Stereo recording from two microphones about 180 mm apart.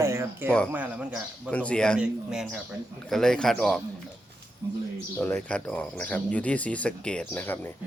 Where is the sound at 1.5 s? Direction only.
5° left (ahead or behind).